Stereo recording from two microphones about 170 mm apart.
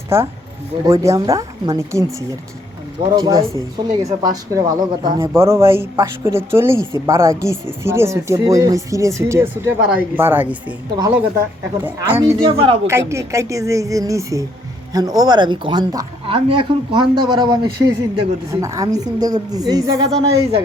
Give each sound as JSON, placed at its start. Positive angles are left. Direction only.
{"t": 0.1, "sound": "speech", "side_deg": -15}
{"t": 3.2, "sound": "speech", "side_deg": -20}
{"t": 10.9, "sound": "speech", "side_deg": -20}
{"t": 12.5, "sound": "speech", "side_deg": -30}
{"t": 12.9, "sound": "speech", "side_deg": -15}